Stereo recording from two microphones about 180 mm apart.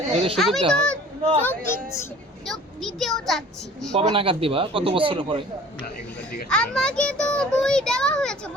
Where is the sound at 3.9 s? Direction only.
35° right (ahead or behind).